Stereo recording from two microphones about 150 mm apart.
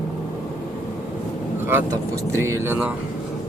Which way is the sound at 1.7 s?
20° right (ahead or behind).